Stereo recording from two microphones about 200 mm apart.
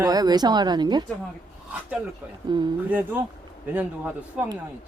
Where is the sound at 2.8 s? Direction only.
10° right (ahead or behind).